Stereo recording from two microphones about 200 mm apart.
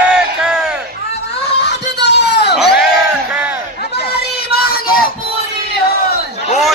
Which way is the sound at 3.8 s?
50° left (ahead or behind).